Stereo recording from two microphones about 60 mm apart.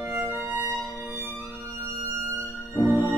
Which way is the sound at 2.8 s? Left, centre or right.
Left.